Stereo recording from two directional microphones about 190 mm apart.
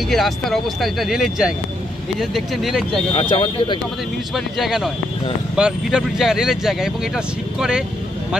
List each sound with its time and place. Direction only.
0.1 s speech: centre (ahead or behind)
3.1 s speech: 25° left (ahead or behind)
4.6 s speech: centre (ahead or behind)